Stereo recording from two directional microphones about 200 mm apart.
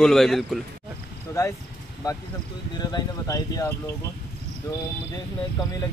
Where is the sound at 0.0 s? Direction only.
Centre (ahead or behind).